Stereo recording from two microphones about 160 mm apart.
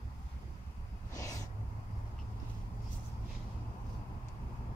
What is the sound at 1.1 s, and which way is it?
Snort, 20° left (ahead or behind).